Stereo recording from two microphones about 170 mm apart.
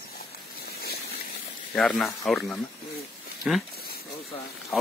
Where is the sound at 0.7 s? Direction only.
65° left (ahead or behind).